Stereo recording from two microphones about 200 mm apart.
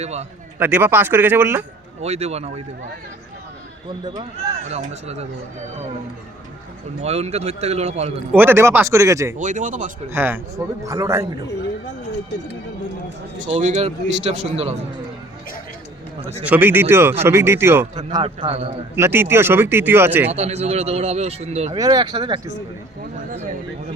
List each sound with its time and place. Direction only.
0.0 s speech: 35° right (ahead or behind)
0.6 s a man's voice: 10° right (ahead or behind)
2.0 s speech: 30° right (ahead or behind)
4.0 s speech: 20° right (ahead or behind)
4.6 s speech: 35° right (ahead or behind)
7.0 s speech: 35° right (ahead or behind)
8.4 s a man's voice: 10° right (ahead or behind)
9.4 s speech: 40° right (ahead or behind)
10.1 s a man's voice: 10° right (ahead or behind)
13.4 s speech: 40° right (ahead or behind)
16.5 s a man's voice: 10° right (ahead or behind); by 18.7 s 25° right (ahead or behind)
18.9 s a man's voice: 10° right (ahead or behind)
20.3 s speech: 30° right (ahead or behind)
21.7 s speech: 20° right (ahead or behind)